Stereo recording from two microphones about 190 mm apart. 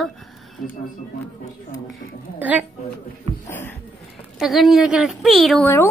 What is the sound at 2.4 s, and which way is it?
Speech, 10° right (ahead or behind).